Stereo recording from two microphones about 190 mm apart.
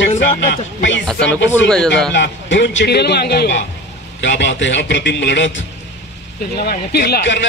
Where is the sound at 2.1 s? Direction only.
70° left (ahead or behind).